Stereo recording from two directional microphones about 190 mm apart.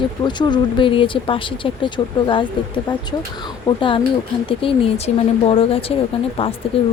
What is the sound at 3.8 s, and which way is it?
Speech, 25° left (ahead or behind).